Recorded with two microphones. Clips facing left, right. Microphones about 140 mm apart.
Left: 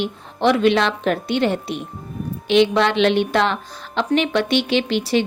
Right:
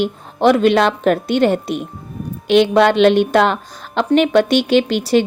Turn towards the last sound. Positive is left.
turn(degrees=-45)  # may be behind; listen again after turning